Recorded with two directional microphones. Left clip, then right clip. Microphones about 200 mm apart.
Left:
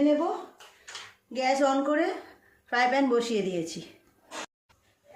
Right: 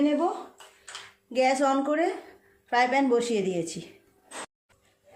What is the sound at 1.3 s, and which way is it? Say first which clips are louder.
A woman's voice: right 2 dB; 30° right (ahead or behind).